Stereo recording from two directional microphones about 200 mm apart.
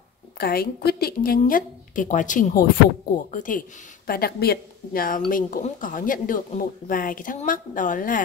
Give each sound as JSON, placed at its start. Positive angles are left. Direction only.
{"t": 0.4, "sound": "a woman's voice", "side_deg": 50}